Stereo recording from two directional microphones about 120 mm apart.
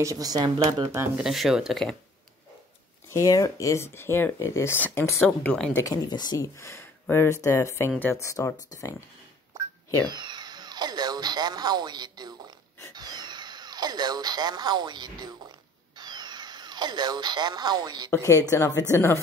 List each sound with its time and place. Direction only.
0.0 s speech: 30° right (ahead or behind)
1.1 s speech: centre (ahead or behind)
3.1 s speech: 25° left (ahead or behind)
5.4 s a woman's voice: 10° left (ahead or behind)
5.9 s speech: 35° left (ahead or behind)
10.0 s dental drill: 40° right (ahead or behind)
12.9 s speech: 35° right (ahead or behind)
18.1 s speech: 25° left (ahead or behind)